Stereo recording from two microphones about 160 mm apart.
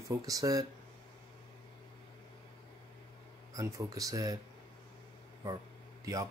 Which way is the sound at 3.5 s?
20° right (ahead or behind).